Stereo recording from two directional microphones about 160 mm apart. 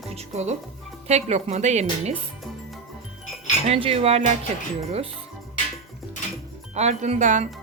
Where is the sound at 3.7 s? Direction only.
35° right (ahead or behind).